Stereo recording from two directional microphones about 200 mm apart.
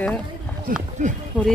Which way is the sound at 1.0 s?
35° right (ahead or behind).